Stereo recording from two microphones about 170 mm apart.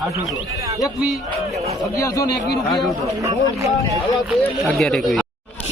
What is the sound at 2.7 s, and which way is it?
Speech, centre (ahead or behind).